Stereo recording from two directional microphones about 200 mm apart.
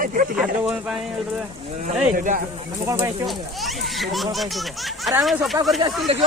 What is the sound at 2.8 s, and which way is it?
Speech, 15° right (ahead or behind).